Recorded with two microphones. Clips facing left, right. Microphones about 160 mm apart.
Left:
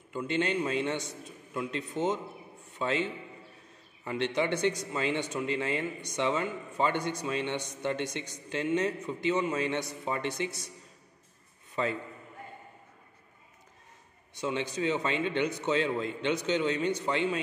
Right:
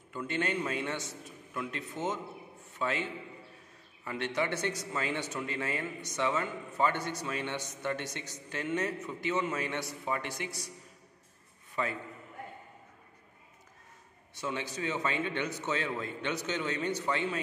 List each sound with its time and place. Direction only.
0.1 s a man's voice: 20° left (ahead or behind)
11.7 s a man's voice: 25° left (ahead or behind)
14.3 s a man's voice: 20° left (ahead or behind)